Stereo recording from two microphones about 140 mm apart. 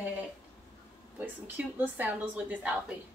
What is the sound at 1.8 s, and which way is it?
Speech, 10° right (ahead or behind).